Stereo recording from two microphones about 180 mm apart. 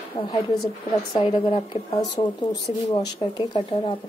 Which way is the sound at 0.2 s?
20° left (ahead or behind).